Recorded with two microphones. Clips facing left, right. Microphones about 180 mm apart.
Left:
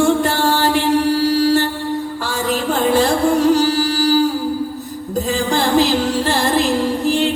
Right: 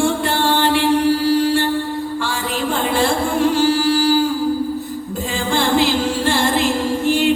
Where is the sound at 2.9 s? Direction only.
40° left (ahead or behind).